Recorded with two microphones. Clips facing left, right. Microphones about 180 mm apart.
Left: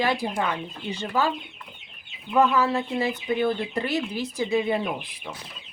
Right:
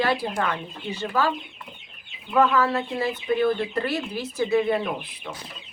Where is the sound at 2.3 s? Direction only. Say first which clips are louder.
Even; 15° left (ahead or behind).